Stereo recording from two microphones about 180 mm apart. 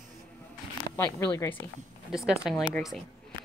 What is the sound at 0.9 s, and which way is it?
Speech, 15° left (ahead or behind).